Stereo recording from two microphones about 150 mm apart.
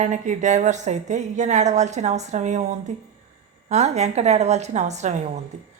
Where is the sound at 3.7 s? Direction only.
50° right (ahead or behind).